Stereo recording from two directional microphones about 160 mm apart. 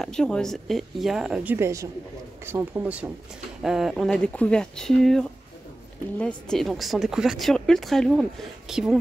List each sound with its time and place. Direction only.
0.0 s speech: 5° left (ahead or behind)